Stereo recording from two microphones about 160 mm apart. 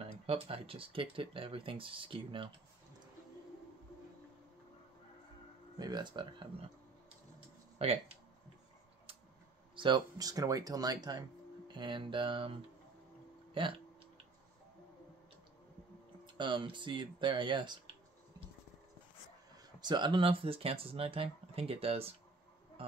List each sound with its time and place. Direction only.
0.0 s speech: 35° right (ahead or behind)
5.8 s speech: 25° right (ahead or behind)
7.8 s speech: 40° right (ahead or behind)
9.8 s speech: 30° right (ahead or behind)
13.6 s a sound: 30° right (ahead or behind)
16.3 s speech: 30° right (ahead or behind)
19.5 s speech: 25° right (ahead or behind)
22.8 s music: 35° right (ahead or behind)